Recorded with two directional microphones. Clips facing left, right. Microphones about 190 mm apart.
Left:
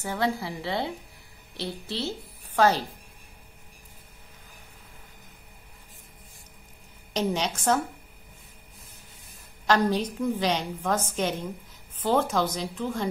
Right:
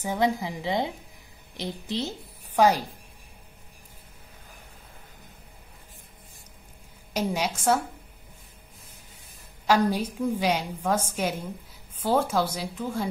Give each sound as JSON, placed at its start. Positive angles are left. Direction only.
{"t": 0.0, "sound": "a woman's voice", "side_deg": -15}
{"t": 7.2, "sound": "a woman's voice", "side_deg": -10}
{"t": 9.7, "sound": "a woman's voice", "side_deg": -10}